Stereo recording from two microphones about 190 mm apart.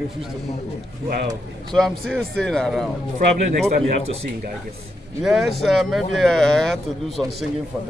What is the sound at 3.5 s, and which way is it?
Speech, 35° right (ahead or behind).